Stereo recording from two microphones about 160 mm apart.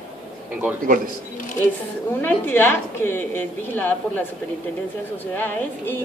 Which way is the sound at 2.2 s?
15° left (ahead or behind).